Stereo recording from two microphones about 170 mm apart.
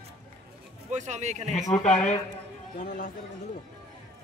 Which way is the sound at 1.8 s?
45° left (ahead or behind).